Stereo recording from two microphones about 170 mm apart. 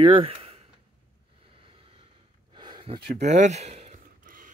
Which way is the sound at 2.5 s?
25° right (ahead or behind).